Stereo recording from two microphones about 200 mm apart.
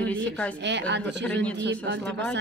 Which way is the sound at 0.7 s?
60° right (ahead or behind).